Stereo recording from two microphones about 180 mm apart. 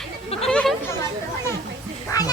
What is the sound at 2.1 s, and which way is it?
Duck, 20° left (ahead or behind).